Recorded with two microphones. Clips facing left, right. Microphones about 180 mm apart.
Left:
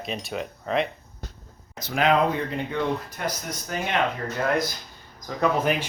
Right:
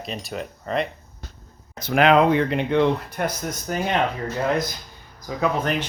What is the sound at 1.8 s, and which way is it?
Speech, 60° right (ahead or behind).